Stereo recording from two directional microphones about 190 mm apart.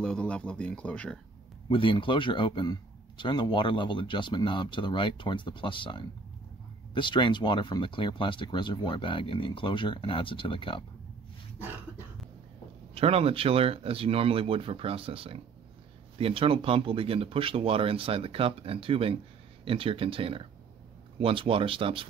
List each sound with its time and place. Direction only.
0.0 s speech: 5° left (ahead or behind)
1.7 s speech: 25° left (ahead or behind)
12.9 s speech: 30° right (ahead or behind)